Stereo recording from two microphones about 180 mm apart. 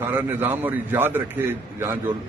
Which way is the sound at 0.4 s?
10° right (ahead or behind).